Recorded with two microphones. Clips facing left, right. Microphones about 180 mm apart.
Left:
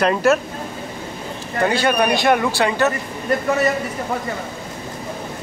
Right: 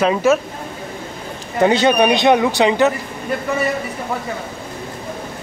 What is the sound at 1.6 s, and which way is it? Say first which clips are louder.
Speech: right 4 dB; 20° right (ahead or behind).